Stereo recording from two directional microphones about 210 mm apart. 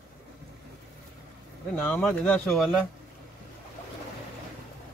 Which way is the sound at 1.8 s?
5° left (ahead or behind).